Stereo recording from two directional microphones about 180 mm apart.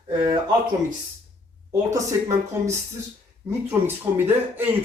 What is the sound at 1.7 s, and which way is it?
Speech, 15° right (ahead or behind).